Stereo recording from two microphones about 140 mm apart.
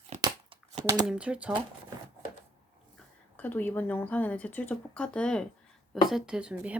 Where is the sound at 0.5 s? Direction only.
40° right (ahead or behind).